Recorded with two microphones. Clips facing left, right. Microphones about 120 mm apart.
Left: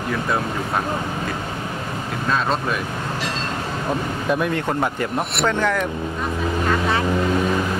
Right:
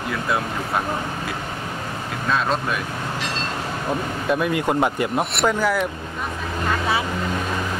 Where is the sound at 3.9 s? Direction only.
Centre (ahead or behind).